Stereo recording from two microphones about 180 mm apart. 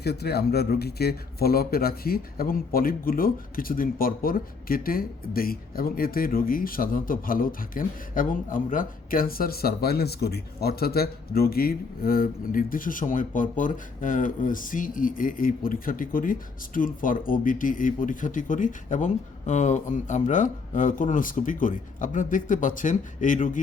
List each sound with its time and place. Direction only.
0.0 s a man's voice: 65° left (ahead or behind); by 23.6 s 45° left (ahead or behind)